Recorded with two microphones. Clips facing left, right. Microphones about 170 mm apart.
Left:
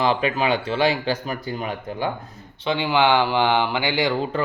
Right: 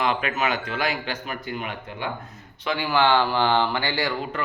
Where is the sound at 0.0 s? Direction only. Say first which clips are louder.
Left 4 dB; 30° left (ahead or behind).